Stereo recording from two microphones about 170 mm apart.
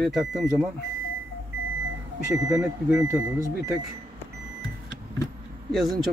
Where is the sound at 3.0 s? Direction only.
15° right (ahead or behind).